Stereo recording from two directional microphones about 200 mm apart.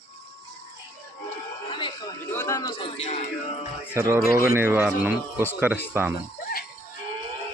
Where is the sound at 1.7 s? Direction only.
25° left (ahead or behind).